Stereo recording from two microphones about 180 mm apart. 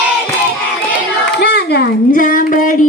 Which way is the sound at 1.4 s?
60° left (ahead or behind).